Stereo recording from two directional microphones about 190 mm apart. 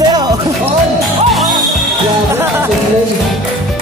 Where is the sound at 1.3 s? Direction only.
Centre (ahead or behind).